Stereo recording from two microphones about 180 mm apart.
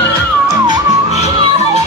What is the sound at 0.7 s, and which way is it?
Music, 40° left (ahead or behind).